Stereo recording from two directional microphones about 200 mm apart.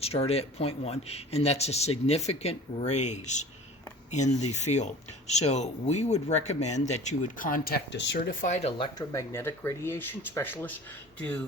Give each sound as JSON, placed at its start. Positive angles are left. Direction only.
{"t": 0.0, "sound": "speech", "side_deg": 30}
{"t": 9.0, "sound": "speech", "side_deg": 15}